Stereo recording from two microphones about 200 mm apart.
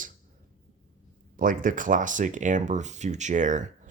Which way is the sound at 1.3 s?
45° right (ahead or behind).